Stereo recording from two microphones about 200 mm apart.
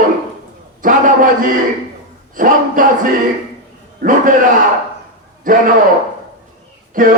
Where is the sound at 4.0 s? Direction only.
40° right (ahead or behind).